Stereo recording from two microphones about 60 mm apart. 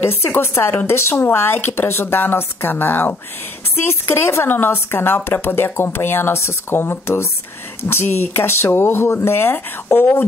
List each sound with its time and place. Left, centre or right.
0.0 s speech: left